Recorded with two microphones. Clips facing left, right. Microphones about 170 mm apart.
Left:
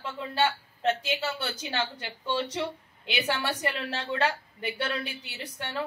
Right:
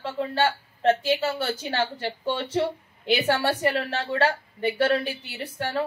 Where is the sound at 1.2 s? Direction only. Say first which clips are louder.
Right 6 dB; 35° right (ahead or behind).